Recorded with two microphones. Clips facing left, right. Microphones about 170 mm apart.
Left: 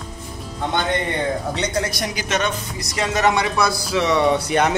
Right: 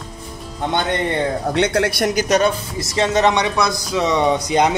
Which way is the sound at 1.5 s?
60° right (ahead or behind).